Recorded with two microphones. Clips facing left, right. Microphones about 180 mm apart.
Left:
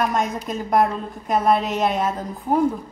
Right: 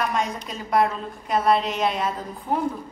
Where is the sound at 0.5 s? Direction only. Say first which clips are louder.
Left 2 dB; 45° left (ahead or behind).